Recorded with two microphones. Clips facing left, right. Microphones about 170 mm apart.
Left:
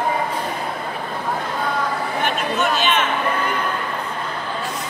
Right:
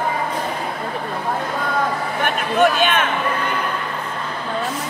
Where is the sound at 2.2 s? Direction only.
55° right (ahead or behind).